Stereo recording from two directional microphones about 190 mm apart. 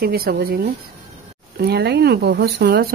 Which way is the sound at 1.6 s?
60° right (ahead or behind).